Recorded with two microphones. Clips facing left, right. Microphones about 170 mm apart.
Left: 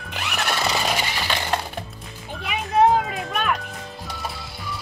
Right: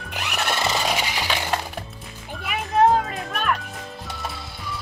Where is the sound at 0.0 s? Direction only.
Centre (ahead or behind).